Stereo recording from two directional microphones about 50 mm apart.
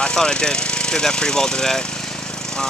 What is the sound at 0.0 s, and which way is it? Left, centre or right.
Speech, centre.